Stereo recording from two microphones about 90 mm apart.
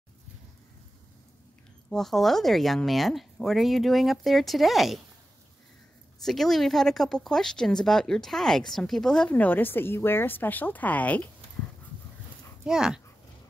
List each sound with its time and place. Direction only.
1.9 s speech: 5° left (ahead or behind)
6.2 s speech: centre (ahead or behind)
9.3 s speech: 20° left (ahead or behind)
12.6 s speech: 5° right (ahead or behind)